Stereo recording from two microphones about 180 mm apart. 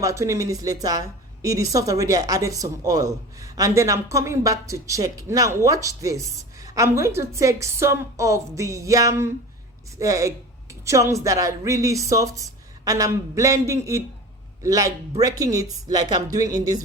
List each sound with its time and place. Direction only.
0.0 s a woman's voice: 15° right (ahead or behind)